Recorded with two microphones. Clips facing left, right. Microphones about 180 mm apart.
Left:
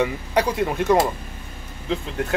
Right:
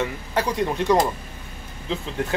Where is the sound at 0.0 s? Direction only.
15° left (ahead or behind).